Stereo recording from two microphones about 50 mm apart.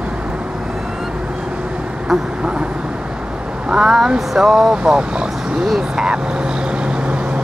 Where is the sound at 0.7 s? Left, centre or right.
Centre.